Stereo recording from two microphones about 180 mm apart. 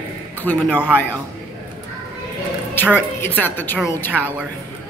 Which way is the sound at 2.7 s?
10° left (ahead or behind).